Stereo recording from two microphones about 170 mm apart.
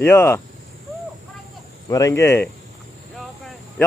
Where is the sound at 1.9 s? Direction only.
20° left (ahead or behind).